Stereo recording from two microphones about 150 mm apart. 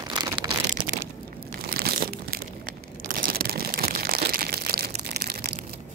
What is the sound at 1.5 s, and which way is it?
Crushing, 85° right.